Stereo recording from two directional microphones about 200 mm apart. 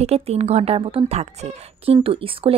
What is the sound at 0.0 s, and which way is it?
A woman's voice, 30° right (ahead or behind).